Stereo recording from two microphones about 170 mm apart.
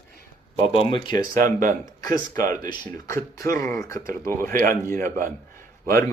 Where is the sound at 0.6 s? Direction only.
30° left (ahead or behind).